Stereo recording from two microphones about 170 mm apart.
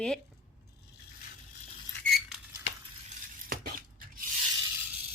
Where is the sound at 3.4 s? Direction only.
55° right (ahead or behind).